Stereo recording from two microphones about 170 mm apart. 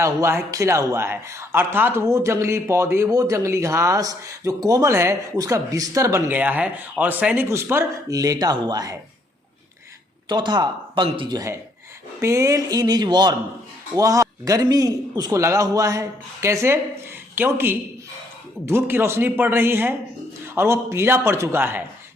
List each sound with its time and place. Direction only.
0.0 s a man's voice: 15° right (ahead or behind)
10.2 s a man's voice: 25° right (ahead or behind)